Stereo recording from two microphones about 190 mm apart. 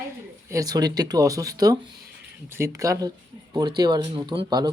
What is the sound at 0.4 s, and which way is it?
Speech, 15° right (ahead or behind).